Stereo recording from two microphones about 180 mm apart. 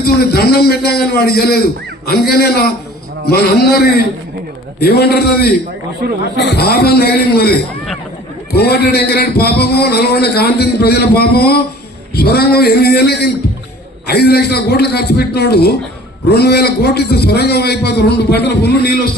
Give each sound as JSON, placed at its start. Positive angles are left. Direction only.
{"t": 0.0, "sound": "a man's voice", "side_deg": 60}
{"t": 6.3, "sound": "a man's voice", "side_deg": 70}
{"t": 8.5, "sound": "a man's voice", "side_deg": 60}